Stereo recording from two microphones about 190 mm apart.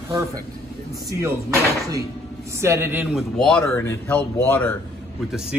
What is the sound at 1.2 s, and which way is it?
A man's voice, 15° right (ahead or behind).